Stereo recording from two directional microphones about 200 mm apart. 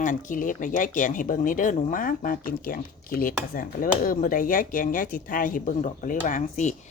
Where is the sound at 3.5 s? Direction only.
45° left (ahead or behind).